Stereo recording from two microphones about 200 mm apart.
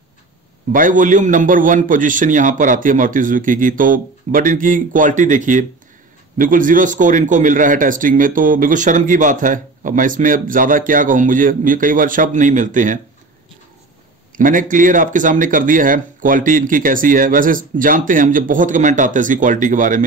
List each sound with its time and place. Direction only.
0.7 s a man's voice: 40° right (ahead or behind)
14.3 s a man's voice: 40° right (ahead or behind)